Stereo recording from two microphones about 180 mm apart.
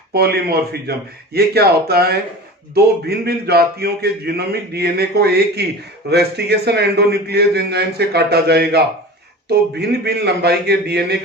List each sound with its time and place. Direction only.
0.1 s speech: 60° right (ahead or behind)